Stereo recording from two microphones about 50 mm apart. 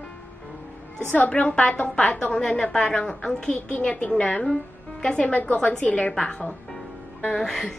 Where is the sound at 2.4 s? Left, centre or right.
Centre.